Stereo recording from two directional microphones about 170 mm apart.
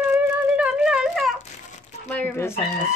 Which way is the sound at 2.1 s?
10° left (ahead or behind).